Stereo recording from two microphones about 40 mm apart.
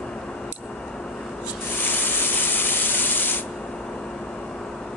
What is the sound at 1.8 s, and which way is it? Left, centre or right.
Rub, left.